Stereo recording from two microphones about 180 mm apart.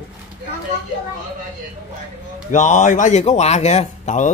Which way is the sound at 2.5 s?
45° left (ahead or behind).